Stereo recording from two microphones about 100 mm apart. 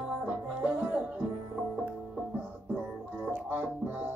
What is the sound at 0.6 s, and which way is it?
Music, 15° right (ahead or behind).